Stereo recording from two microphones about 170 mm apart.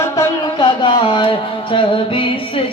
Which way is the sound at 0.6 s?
30° left (ahead or behind).